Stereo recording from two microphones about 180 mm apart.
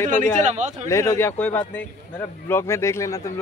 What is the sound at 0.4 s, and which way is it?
Speech, 40° right (ahead or behind).